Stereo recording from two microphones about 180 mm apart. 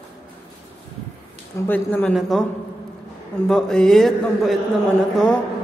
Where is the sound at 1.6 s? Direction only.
10° left (ahead or behind).